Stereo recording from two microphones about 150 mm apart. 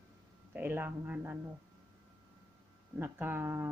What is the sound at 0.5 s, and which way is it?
Speech, 15° right (ahead or behind).